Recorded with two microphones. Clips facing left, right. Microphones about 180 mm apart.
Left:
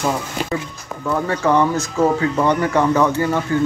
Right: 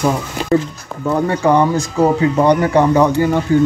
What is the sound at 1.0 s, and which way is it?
Speech, 15° right (ahead or behind).